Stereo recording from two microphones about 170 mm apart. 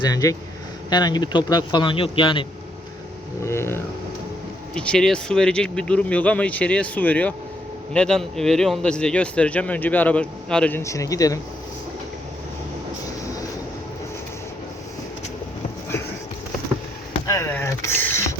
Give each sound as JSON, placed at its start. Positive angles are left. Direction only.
{"t": 0.0, "sound": "a man's voice", "side_deg": 20}
{"t": 3.4, "sound": "speech", "side_deg": 15}
{"t": 17.2, "sound": "speech", "side_deg": 15}